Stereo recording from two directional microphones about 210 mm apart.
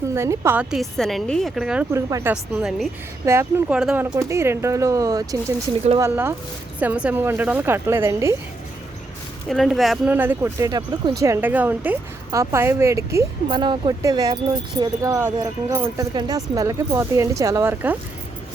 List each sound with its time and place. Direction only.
0.1 s a woman's voice: 15° right (ahead or behind)
2.3 s a woman's voice: 5° right (ahead or behind)
9.5 s speech: centre (ahead or behind)